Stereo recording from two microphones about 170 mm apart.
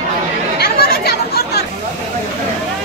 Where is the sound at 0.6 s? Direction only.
70° left (ahead or behind).